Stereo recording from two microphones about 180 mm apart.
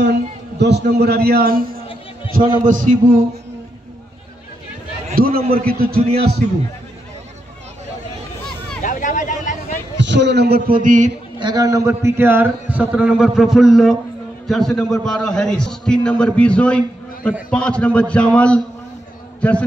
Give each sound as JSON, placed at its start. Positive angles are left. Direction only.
{"t": 0.0, "sound": "a man's voice", "side_deg": -70}
{"t": 5.1, "sound": "a man's voice", "side_deg": -55}
{"t": 8.8, "sound": "a sound", "side_deg": 45}
{"t": 9.9, "sound": "a man's voice", "side_deg": -75}
{"t": 11.3, "sound": "a man's voice", "side_deg": -20}